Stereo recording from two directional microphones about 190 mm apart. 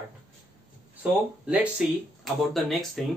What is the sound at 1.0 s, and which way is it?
Speech, 5° right (ahead or behind).